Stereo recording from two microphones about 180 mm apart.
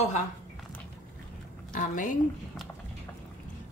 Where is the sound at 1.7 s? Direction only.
45° left (ahead or behind).